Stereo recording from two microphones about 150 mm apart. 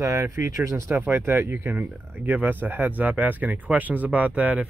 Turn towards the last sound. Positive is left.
turn(degrees=-10)  # may be behind; listen again after turning